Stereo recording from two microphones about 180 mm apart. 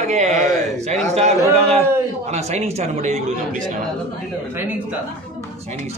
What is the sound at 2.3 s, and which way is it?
Speech, 35° right (ahead or behind).